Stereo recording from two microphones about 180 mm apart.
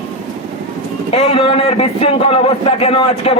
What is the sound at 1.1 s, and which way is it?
A man's voice, 30° left (ahead or behind).